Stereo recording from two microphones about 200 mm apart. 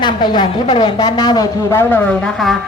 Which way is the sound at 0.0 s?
20° left (ahead or behind).